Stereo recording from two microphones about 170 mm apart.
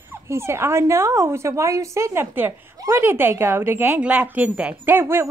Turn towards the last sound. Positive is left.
turn(degrees=-15)  # may be behind; listen again after turning